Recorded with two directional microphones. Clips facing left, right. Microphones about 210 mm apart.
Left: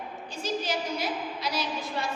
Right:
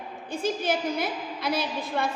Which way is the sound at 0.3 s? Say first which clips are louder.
Right 5 dB; 55° right (ahead or behind).